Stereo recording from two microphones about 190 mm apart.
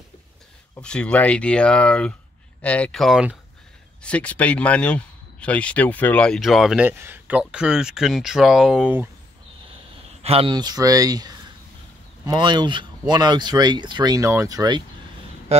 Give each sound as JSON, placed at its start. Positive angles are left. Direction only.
{"t": 0.8, "sound": "speech", "side_deg": 5}
{"t": 10.2, "sound": "speech", "side_deg": -30}